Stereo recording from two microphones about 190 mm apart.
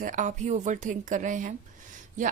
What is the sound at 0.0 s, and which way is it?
A woman's voice, 40° right (ahead or behind).